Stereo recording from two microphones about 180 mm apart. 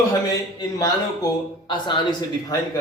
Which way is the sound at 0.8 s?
20° left (ahead or behind).